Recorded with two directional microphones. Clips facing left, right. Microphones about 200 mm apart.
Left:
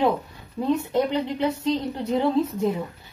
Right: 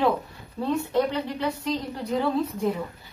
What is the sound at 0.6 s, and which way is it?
A woman's voice, 15° left (ahead or behind).